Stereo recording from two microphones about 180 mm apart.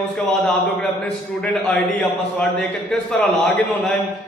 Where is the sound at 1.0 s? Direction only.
5° left (ahead or behind).